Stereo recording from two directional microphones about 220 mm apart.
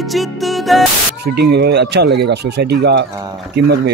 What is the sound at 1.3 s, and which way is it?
Speech, 50° right (ahead or behind).